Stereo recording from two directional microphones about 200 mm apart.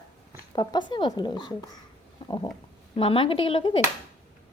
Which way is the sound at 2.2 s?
20° left (ahead or behind).